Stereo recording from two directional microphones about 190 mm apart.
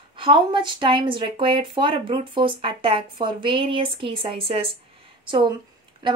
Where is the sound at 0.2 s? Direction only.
25° right (ahead or behind).